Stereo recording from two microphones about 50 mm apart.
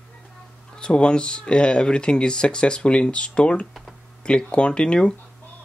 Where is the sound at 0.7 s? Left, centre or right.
Centre.